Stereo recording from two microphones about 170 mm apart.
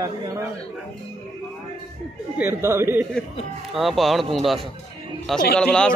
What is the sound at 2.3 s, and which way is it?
Speech, 15° right (ahead or behind).